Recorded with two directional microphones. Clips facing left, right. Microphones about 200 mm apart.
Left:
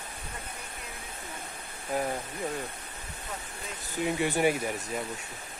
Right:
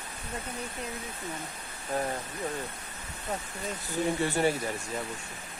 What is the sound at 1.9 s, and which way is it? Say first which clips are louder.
Speech: left 1 dB; 10° left (ahead or behind).